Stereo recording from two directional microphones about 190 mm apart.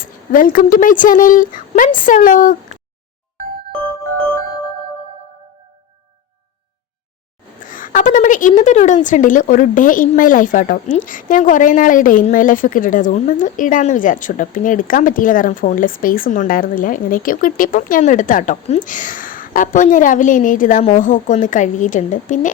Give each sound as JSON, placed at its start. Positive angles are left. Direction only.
{"t": 0.3, "sound": "a woman's voice", "side_deg": 45}
{"t": 7.6, "sound": "a sound", "side_deg": 45}
{"t": 9.0, "sound": "a woman's voice", "side_deg": 40}